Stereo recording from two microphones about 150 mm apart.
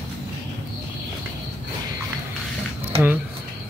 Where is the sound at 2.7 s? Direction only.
15° right (ahead or behind).